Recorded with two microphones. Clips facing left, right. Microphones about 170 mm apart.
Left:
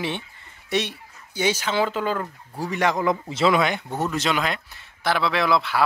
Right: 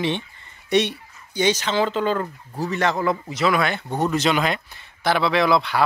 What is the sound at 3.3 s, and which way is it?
Speech, 25° left (ahead or behind).